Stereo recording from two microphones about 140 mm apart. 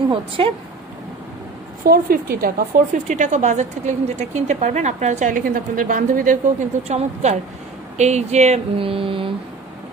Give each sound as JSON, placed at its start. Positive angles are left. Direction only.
{"t": 1.9, "sound": "a woman's voice", "side_deg": -90}
{"t": 6.9, "sound": "a woman's voice", "side_deg": -50}
{"t": 8.0, "sound": "a sound", "side_deg": -55}